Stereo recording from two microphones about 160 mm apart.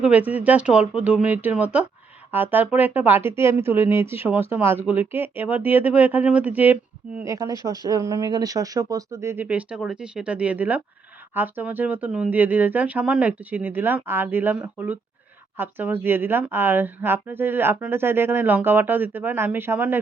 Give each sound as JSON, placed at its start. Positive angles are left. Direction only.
{"t": 0.0, "sound": "speech", "side_deg": -10}